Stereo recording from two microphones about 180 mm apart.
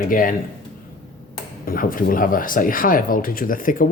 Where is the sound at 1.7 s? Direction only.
50° left (ahead or behind).